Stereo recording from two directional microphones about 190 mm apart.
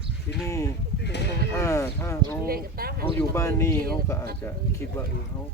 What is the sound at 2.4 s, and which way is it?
Speech, 50° right (ahead or behind).